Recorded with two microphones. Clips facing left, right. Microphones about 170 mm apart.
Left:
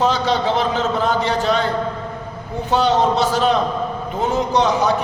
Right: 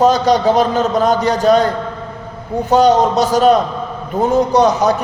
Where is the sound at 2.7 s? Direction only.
40° right (ahead or behind).